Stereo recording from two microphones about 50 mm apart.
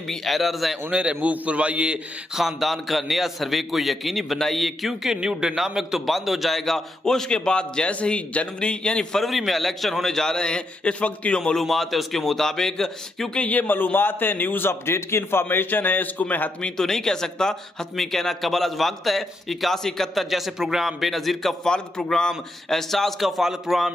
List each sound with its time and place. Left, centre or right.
0.1 s speech: centre
0.8 s a man's voice: right
2.3 s speech: centre
5.2 s a man's voice: centre
5.6 s a man's voice: centre
9.2 s a man's voice: centre
11.6 s speech: centre
13.4 s a man's voice: left
14.7 s a man's voice: left
15.4 s a man's voice: left
16.7 s a man's voice: centre